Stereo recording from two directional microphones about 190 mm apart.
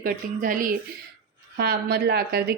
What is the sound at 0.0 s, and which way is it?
Speech, 45° right (ahead or behind).